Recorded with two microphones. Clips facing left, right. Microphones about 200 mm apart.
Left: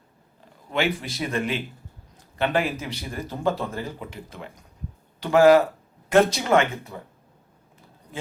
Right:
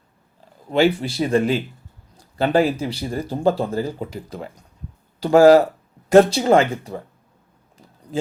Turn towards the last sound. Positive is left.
turn(degrees=-35)  # may be behind; listen again after turning